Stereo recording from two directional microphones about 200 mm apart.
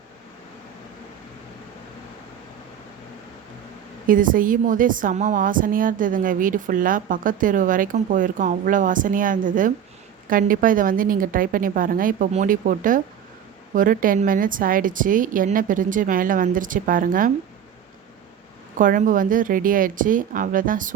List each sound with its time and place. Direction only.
4.0 s a woman's voice: 45° right (ahead or behind)
18.8 s speech: 40° right (ahead or behind)